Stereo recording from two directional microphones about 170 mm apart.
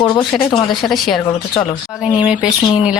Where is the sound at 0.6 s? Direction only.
Centre (ahead or behind).